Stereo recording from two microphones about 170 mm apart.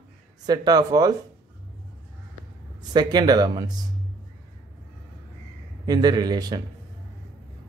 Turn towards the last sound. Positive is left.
turn(degrees=-25)  # may be behind; listen again after turning